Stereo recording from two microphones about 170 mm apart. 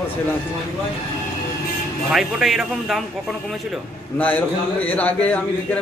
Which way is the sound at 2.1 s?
Centre (ahead or behind).